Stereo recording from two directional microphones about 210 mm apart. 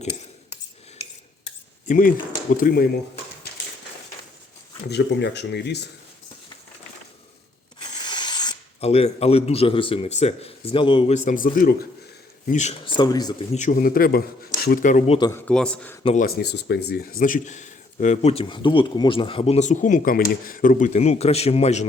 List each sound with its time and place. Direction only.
1.9 s speech: 40° left (ahead or behind)
4.9 s speech: 55° left (ahead or behind)
8.0 s speech: 20° left (ahead or behind); by 11.9 s 45° left (ahead or behind)
12.5 s speech: 35° left (ahead or behind)
13.5 s speech: 35° left (ahead or behind)
15.3 s a man's voice: 5° left (ahead or behind)
16.2 s speech: 50° left (ahead or behind); by 21.8 s 30° left (ahead or behind)